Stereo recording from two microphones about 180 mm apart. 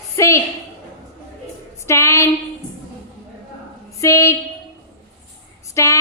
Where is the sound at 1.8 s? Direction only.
15° left (ahead or behind).